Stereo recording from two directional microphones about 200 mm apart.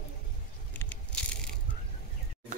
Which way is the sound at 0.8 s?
5° left (ahead or behind).